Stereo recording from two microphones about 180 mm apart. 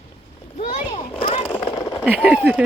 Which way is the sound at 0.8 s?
25° left (ahead or behind).